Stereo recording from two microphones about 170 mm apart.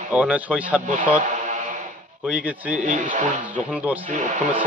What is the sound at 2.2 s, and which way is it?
Speech, 10° right (ahead or behind).